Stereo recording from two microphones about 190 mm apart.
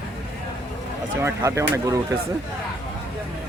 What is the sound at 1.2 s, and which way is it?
Speech, 15° right (ahead or behind).